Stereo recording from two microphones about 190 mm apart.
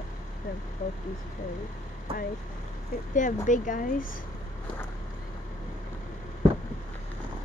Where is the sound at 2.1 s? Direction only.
30° right (ahead or behind).